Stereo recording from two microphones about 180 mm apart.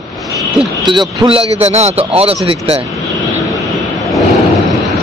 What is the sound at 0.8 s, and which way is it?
Speech, 30° right (ahead or behind).